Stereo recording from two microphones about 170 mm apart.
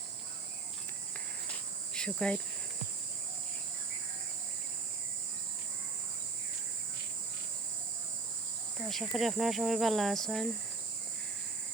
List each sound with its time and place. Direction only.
1.9 s insect: 5° left (ahead or behind)
8.9 s speech: centre (ahead or behind)